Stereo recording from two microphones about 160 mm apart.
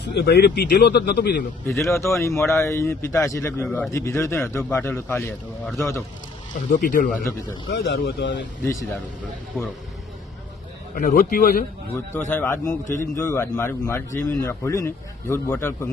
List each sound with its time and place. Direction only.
0.1 s speech: 85° left
1.6 s speech: 15° left (ahead or behind)
6.7 s a man's voice: 55° left (ahead or behind)
7.9 s speech: 90° left
10.9 s a man's voice: 55° left (ahead or behind)
11.9 s speech: 15° left (ahead or behind)